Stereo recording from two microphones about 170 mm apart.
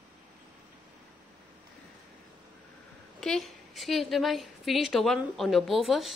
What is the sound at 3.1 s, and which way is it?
A woman's voice, centre (ahead or behind).